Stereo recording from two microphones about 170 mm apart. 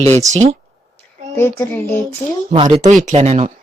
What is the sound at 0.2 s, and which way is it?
Speech, 40° right (ahead or behind).